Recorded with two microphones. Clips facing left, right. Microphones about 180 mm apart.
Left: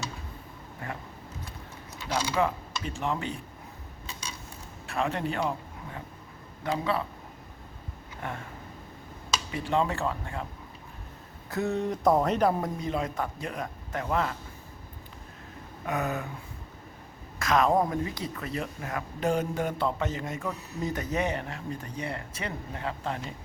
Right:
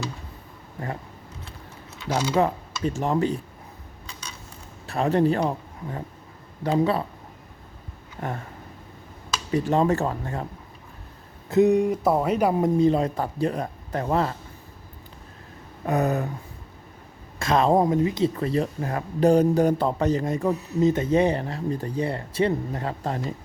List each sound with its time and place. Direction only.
2.1 s speech: 40° right (ahead or behind)
4.9 s speech: 35° right (ahead or behind)
9.5 s speech: 40° right (ahead or behind)
11.4 s speech: 20° right (ahead or behind)
12.8 s speech: 35° right (ahead or behind)
15.9 s speech: 40° right (ahead or behind)
17.4 s speech: 30° right (ahead or behind)
20.8 s speech: 25° right (ahead or behind)